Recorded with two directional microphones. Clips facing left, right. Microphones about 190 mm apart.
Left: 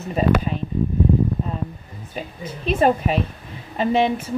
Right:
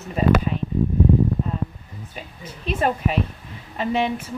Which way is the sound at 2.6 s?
30° left (ahead or behind).